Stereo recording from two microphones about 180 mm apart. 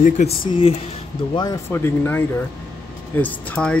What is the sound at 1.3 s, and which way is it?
Speech, 20° left (ahead or behind).